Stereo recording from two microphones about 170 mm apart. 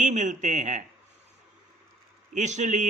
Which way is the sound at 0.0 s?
45° right (ahead or behind).